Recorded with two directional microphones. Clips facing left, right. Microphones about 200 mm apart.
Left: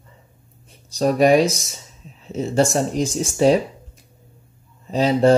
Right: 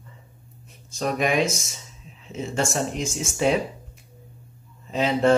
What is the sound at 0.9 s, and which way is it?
Speech, 35° left (ahead or behind).